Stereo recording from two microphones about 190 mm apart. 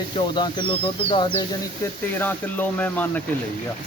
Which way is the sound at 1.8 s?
10° left (ahead or behind).